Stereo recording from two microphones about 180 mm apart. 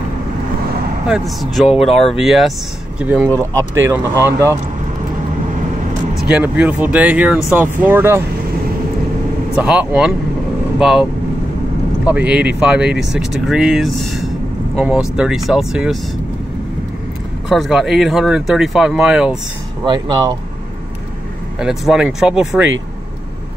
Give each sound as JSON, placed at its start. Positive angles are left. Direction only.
{"t": 1.0, "sound": "speech", "side_deg": 0}
{"t": 6.2, "sound": "speech", "side_deg": -5}
{"t": 9.6, "sound": "speech", "side_deg": -5}
{"t": 12.1, "sound": "speech", "side_deg": -5}
{"t": 17.5, "sound": "speech", "side_deg": 0}
{"t": 19.9, "sound": "speech", "side_deg": -25}
{"t": 21.5, "sound": "speech", "side_deg": -5}